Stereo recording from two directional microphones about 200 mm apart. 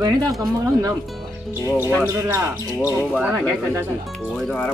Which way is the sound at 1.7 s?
10° right (ahead or behind).